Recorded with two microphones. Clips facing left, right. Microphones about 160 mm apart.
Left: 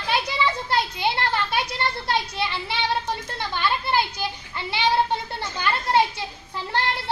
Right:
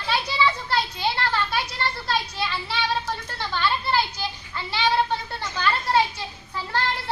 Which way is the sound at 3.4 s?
15° left (ahead or behind).